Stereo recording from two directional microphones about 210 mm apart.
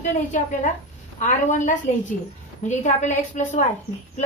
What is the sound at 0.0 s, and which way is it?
A woman's voice, 35° left (ahead or behind).